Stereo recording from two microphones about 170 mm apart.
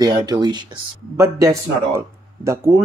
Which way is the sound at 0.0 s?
20° right (ahead or behind).